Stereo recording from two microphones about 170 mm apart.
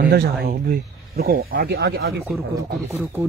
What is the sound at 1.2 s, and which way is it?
Speech, 65° right (ahead or behind).